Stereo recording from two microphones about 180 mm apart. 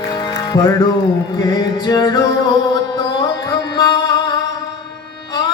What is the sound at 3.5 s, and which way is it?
Music, 20° left (ahead or behind).